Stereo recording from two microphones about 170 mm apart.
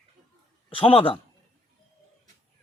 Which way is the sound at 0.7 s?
30° left (ahead or behind).